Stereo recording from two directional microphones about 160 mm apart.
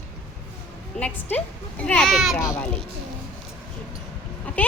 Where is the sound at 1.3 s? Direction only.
10° left (ahead or behind).